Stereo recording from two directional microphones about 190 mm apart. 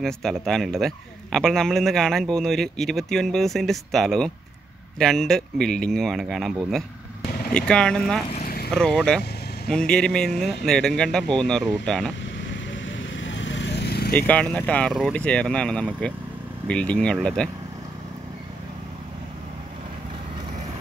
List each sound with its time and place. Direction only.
0.0 s a man's voice: centre (ahead or behind)
8.4 s vehicle: 50° left (ahead or behind)
8.7 s a man's voice: 5° left (ahead or behind)
12.8 s vehicle: 80° left; by 14.1 s 60° left (ahead or behind)
14.1 s a man's voice: 10° left (ahead or behind)